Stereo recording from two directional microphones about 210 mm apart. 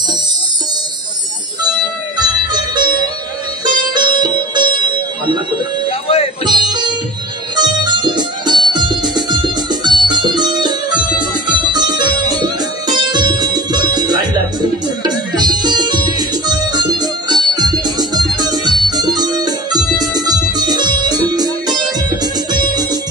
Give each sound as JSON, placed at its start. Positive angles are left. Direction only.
{"t": 2.5, "sound": "music", "side_deg": -20}
{"t": 5.9, "sound": "music", "side_deg": 25}
{"t": 6.7, "sound": "music", "side_deg": -20}